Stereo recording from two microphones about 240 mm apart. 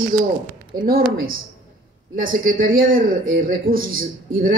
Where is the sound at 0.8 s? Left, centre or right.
Right.